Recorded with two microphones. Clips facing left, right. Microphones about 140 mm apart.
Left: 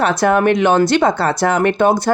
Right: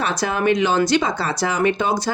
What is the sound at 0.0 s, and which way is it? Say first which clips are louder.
A woman's voice: left 7 dB; 55° left (ahead or behind).